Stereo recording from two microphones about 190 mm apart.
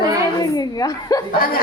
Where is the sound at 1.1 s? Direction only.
20° left (ahead or behind).